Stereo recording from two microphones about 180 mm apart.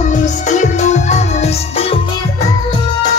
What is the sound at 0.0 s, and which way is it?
Music, 45° left (ahead or behind).